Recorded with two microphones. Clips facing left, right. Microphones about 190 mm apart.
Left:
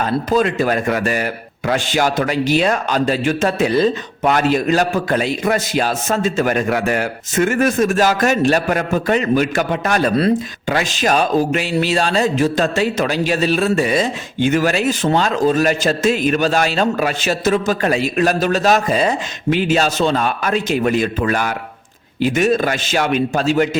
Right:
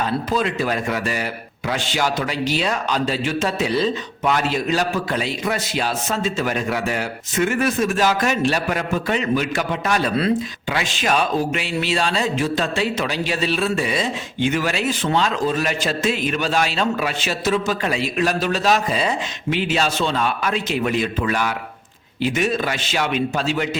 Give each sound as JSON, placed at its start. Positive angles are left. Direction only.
{"t": 0.0, "sound": "a man's voice", "side_deg": 45}